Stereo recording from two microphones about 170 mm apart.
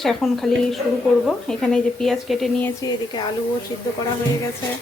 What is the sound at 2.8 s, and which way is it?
Speech, 20° left (ahead or behind).